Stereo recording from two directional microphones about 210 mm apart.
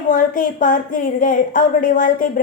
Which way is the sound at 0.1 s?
40° left (ahead or behind).